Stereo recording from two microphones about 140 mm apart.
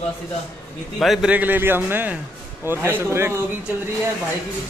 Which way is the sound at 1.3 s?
15° right (ahead or behind).